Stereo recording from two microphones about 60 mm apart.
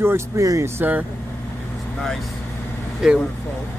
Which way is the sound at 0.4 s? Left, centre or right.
Right.